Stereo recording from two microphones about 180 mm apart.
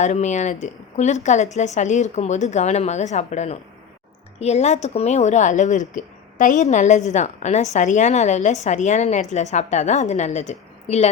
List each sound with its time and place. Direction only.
0.0 s a woman's voice: 40° left (ahead or behind)